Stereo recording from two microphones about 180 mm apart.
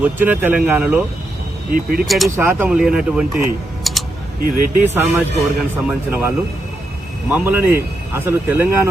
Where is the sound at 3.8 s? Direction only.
Centre (ahead or behind).